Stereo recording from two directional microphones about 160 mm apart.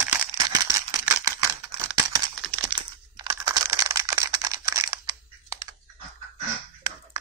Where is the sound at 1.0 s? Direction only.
10° right (ahead or behind).